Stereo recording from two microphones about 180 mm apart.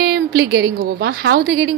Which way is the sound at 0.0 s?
65° right (ahead or behind).